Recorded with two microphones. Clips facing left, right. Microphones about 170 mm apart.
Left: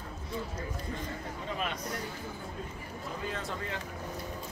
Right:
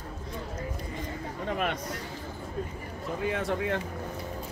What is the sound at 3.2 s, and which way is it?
Speech, 65° right (ahead or behind).